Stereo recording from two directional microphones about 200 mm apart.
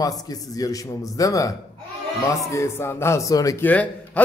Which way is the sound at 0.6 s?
15° left (ahead or behind).